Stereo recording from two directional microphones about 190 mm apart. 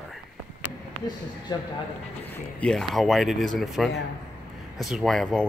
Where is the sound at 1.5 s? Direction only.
20° left (ahead or behind).